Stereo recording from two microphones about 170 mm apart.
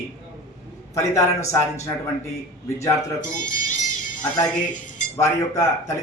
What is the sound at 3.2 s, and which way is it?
Speech, 50° left (ahead or behind).